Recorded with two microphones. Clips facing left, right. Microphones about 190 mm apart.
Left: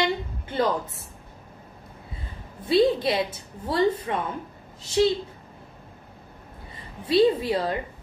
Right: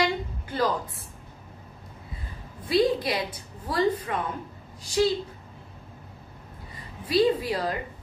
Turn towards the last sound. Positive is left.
turn(degrees=25)  # may be behind; listen again after turning